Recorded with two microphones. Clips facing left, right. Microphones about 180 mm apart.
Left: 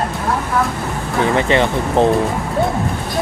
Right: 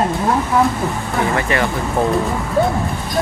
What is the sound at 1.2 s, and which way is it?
Speech, 20° left (ahead or behind).